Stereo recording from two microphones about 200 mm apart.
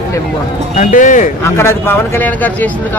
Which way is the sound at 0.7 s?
40° left (ahead or behind).